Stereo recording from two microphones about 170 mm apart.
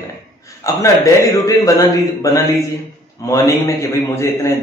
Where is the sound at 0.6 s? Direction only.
20° left (ahead or behind).